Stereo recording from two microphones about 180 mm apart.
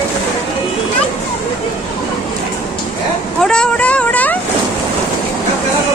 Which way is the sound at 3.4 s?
5° left (ahead or behind).